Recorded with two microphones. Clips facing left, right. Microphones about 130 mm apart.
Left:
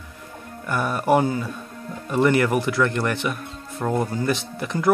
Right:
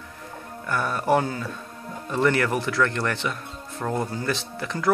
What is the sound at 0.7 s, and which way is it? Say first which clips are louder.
Speech: left 2 dB; 15° left (ahead or behind).